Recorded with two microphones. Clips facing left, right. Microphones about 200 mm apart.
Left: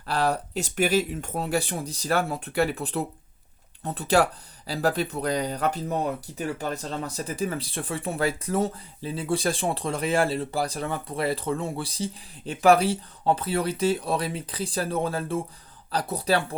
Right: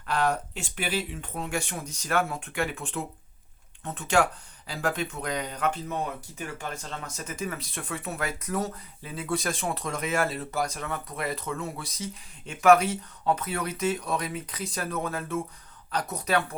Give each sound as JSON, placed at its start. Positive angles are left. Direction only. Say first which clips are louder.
{"t": 0.0, "sound": "speech", "louder": "left 1 dB", "side_deg": 35}